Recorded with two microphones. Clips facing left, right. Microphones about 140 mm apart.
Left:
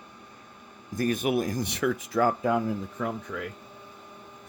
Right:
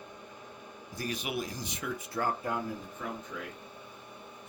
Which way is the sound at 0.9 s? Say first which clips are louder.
Left 10 dB; 50° left (ahead or behind).